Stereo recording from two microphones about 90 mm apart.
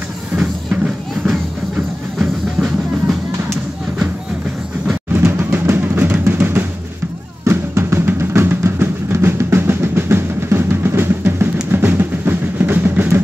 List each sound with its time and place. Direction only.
0.4 s music: 5° right (ahead or behind)
5.1 s music: 25° right (ahead or behind)
7.4 s drum: 30° right (ahead or behind)